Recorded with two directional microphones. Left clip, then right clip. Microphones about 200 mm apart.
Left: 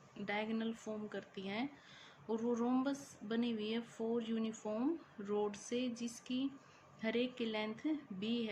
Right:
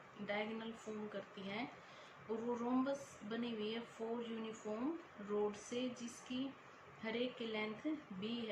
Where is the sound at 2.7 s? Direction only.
60° left (ahead or behind).